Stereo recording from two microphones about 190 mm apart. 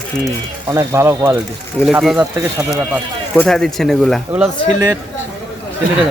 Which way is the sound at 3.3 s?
5° left (ahead or behind).